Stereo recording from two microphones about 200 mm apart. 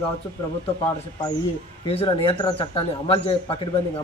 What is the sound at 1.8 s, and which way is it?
Speech, 30° left (ahead or behind).